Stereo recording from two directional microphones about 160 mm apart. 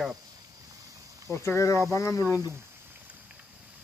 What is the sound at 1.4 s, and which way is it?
Speech, 20° left (ahead or behind).